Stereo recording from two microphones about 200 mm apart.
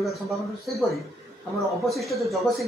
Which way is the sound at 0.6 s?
Centre (ahead or behind).